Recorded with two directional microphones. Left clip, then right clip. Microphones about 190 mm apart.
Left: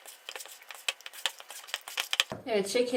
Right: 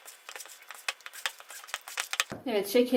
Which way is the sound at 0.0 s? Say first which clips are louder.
Left 2 dB; centre (ahead or behind).